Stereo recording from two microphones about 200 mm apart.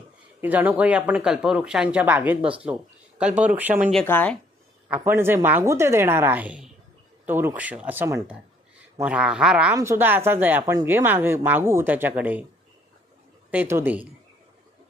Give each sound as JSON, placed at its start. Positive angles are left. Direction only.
{"t": 0.4, "sound": "speech", "side_deg": -10}
{"t": 4.0, "sound": "speech", "side_deg": 10}
{"t": 4.9, "sound": "speech", "side_deg": -10}
{"t": 13.5, "sound": "speech", "side_deg": -10}